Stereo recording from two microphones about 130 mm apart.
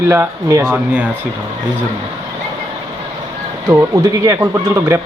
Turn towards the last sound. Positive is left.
turn(degrees=-20)  # may be behind; listen again after turning